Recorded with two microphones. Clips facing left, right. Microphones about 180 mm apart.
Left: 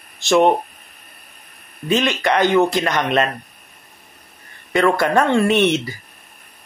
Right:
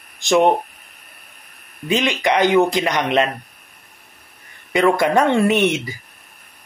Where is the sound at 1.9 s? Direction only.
15° right (ahead or behind).